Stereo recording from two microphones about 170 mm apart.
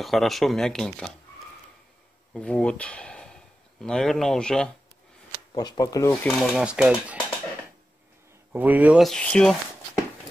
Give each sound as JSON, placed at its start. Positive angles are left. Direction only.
{"t": 0.0, "sound": "speech", "side_deg": 0}
{"t": 2.3, "sound": "speech", "side_deg": 5}
{"t": 5.5, "sound": "speech", "side_deg": 25}
{"t": 6.3, "sound": "speech", "side_deg": 0}
{"t": 8.5, "sound": "speech", "side_deg": -10}